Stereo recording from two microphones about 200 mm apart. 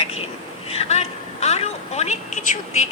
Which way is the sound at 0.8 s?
35° left (ahead or behind).